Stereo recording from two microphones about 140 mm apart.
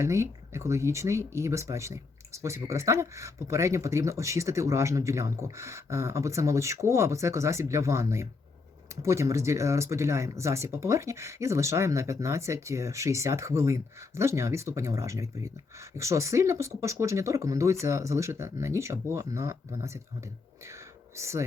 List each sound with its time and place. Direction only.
0.0 s speech: 20° right (ahead or behind)
21.2 s speech: 20° right (ahead or behind)